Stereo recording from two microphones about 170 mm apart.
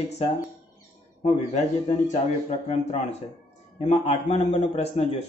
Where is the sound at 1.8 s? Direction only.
40° left (ahead or behind).